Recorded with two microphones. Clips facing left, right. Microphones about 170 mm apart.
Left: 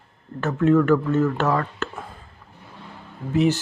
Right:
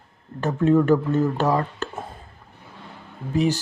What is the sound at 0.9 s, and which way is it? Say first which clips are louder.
Speech: even; 15° right (ahead or behind).